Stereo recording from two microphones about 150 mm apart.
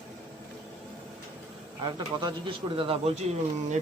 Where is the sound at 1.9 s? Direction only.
30° right (ahead or behind).